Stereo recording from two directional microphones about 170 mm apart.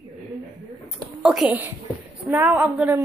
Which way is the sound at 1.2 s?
Centre (ahead or behind).